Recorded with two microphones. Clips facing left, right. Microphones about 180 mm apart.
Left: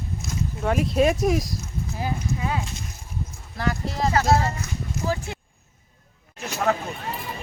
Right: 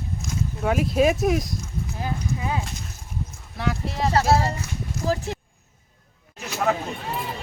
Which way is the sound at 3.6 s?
Centre (ahead or behind).